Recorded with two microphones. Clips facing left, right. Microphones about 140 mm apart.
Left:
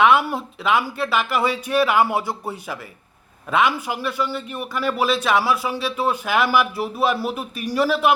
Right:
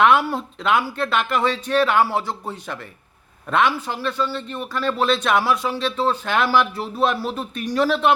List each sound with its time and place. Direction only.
0.0 s a man's voice: centre (ahead or behind)